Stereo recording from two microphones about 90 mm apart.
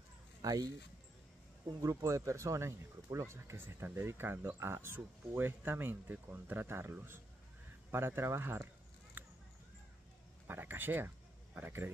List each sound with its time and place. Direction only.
0.4 s speech: 40° right (ahead or behind)
1.8 s speech: 35° right (ahead or behind)
9.2 s a sound: 20° right (ahead or behind)
10.4 s speech: 20° right (ahead or behind)